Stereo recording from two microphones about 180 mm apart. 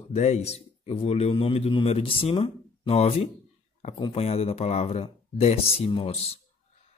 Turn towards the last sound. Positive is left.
turn(degrees=35)  # may be behind; listen again after turning